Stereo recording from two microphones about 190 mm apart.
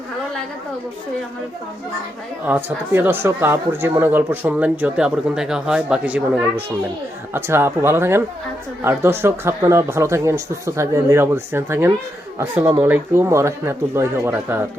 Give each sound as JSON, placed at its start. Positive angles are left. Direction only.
{"t": 2.5, "sound": "speech", "side_deg": -10}